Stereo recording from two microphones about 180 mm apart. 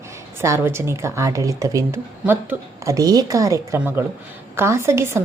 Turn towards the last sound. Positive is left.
turn(degrees=-15)  # may be behind; listen again after turning